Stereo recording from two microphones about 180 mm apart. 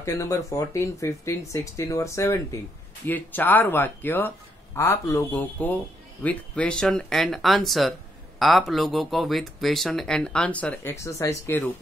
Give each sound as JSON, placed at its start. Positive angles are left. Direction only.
{"t": 0.0, "sound": "speech", "side_deg": 15}